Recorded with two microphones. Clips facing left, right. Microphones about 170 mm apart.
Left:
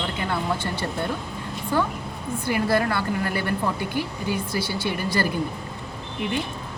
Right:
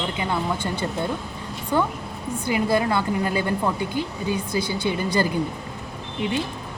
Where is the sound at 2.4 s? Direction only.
20° right (ahead or behind).